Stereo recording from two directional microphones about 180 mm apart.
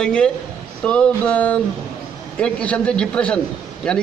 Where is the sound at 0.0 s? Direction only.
5° left (ahead or behind).